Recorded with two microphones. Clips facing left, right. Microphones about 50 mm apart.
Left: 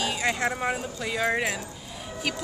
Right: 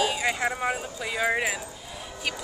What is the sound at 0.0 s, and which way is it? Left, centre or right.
Speech, centre.